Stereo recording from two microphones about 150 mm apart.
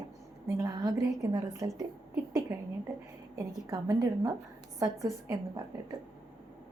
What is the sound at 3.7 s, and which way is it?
A woman's voice, 25° right (ahead or behind).